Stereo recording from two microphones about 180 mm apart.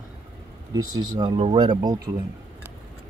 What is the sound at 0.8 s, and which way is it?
Speech, 25° right (ahead or behind).